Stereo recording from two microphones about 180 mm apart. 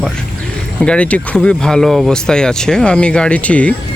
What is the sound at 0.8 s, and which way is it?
Speech, 5° left (ahead or behind).